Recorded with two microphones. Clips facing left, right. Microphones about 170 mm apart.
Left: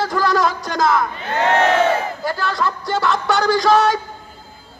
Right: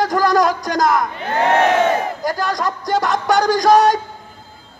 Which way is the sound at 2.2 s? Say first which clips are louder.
Even; 40° right (ahead or behind).